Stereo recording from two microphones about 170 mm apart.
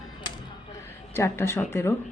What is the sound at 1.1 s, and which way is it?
Speech, 15° left (ahead or behind).